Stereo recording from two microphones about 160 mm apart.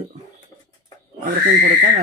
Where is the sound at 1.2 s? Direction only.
60° right (ahead or behind).